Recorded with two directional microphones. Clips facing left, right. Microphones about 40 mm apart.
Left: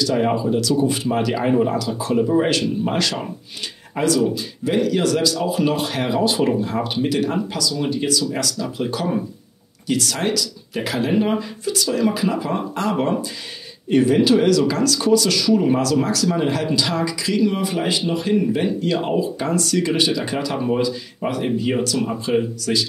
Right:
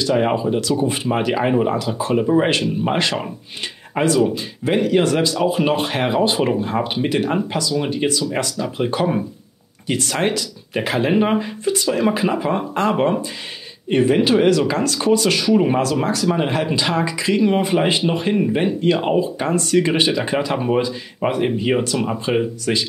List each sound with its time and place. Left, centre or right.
0.1 s speech: right